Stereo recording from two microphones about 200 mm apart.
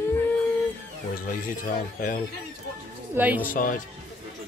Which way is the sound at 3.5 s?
40° left (ahead or behind).